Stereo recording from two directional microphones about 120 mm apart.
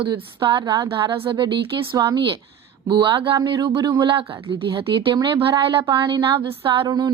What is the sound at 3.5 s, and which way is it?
A woman's voice, 35° right (ahead or behind).